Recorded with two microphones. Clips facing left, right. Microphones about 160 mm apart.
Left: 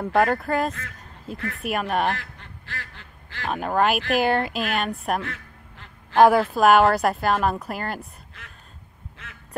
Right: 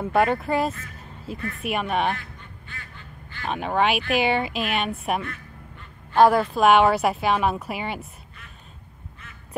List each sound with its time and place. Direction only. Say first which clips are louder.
0.0 s a woman's voice: even; centre (ahead or behind)
2.1 s duck: left 2 dB; 90° left
3.4 s a woman's voice: left 1 dB; centre (ahead or behind)
5.2 s quack: left 1 dB; 90° left
6.1 s a woman's voice: left 1 dB; 5° left (ahead or behind)
8.4 s a sound: left 3 dB; 90° left
9.2 s quack: left 3 dB; 90° left